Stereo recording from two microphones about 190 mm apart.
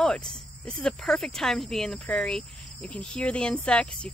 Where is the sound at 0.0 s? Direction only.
5° left (ahead or behind).